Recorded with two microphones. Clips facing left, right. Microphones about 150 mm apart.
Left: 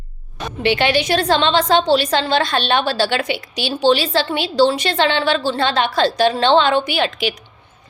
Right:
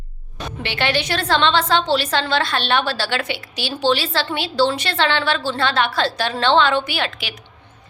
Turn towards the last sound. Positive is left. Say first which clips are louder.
# left 6 dB
turn(degrees=15)  # may be behind; listen again after turning